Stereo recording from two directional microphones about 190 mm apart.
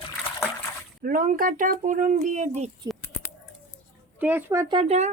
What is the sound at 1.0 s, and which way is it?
Speech, 45° right (ahead or behind).